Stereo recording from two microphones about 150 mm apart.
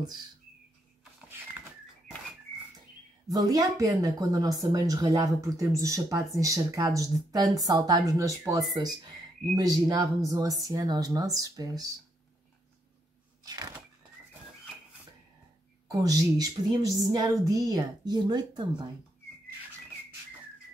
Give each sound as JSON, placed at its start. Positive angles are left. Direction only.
{"t": 0.0, "sound": "a woman's voice", "side_deg": -25}
{"t": 3.3, "sound": "a woman's voice", "side_deg": -25}
{"t": 13.4, "sound": "thunk", "side_deg": -25}
{"t": 15.9, "sound": "a woman's voice", "side_deg": -25}